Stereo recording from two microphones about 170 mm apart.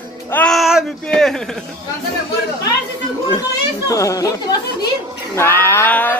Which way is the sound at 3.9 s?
20° left (ahead or behind).